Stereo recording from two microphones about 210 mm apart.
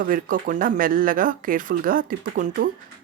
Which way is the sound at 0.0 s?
40° right (ahead or behind).